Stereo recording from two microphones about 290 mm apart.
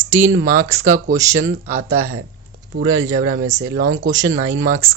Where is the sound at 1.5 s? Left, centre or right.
Right.